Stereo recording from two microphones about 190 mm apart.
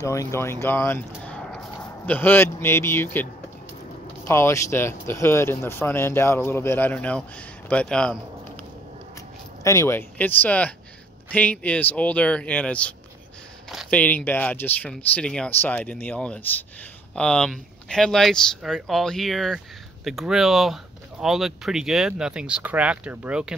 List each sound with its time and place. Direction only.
0.0 s speech: 15° left (ahead or behind)
9.6 s speech: 15° left (ahead or behind); by 23.4 s 5° right (ahead or behind)